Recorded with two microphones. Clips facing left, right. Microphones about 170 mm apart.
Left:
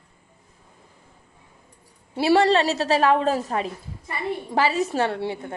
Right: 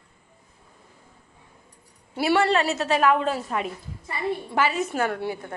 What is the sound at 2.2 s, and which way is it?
A woman's voice, 35° left (ahead or behind).